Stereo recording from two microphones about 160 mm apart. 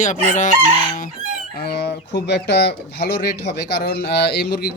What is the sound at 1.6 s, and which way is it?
Speech, 90° left.